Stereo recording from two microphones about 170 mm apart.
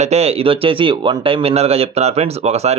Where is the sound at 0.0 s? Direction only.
40° right (ahead or behind).